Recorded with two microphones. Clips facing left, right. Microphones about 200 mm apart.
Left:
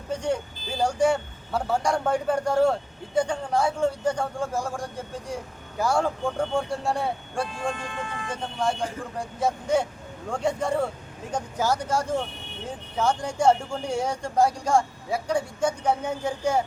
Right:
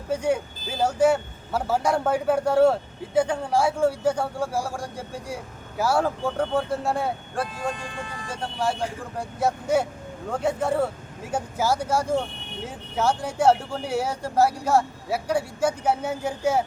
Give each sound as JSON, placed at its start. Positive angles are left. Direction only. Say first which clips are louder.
{"t": 0.1, "sound": "speech", "louder": "right 3 dB", "side_deg": -5}
{"t": 7.9, "sound": "speech", "louder": "left 2 dB", "side_deg": -35}
{"t": 8.3, "sound": "speech", "louder": "right 1 dB", "side_deg": -5}